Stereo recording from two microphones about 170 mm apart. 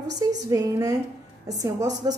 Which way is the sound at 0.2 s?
20° right (ahead or behind).